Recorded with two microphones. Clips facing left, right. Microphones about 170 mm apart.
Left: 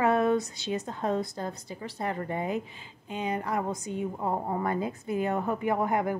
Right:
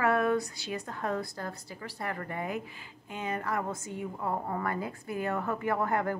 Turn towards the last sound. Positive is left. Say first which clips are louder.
# left 2 dB
turn(degrees=15)  # may be behind; listen again after turning